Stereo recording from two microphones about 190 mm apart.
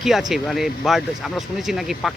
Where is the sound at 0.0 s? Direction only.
Centre (ahead or behind).